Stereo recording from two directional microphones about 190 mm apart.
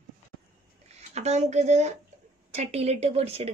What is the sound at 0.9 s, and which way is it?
A woman's voice, 35° right (ahead or behind).